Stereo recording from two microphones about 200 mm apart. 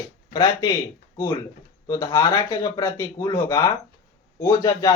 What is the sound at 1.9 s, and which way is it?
Speech, 15° left (ahead or behind).